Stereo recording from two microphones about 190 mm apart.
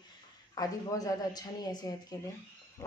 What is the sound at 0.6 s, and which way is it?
A woman's voice, 20° left (ahead or behind).